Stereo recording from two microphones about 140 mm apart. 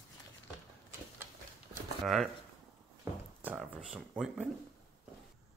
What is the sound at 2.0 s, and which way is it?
Speech, centre (ahead or behind).